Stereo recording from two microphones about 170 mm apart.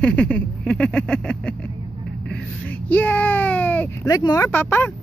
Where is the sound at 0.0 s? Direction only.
5° left (ahead or behind).